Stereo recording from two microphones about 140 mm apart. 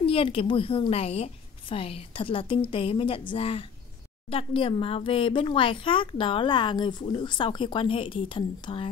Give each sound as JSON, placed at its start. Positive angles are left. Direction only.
{"t": 0.0, "sound": "speech", "side_deg": 40}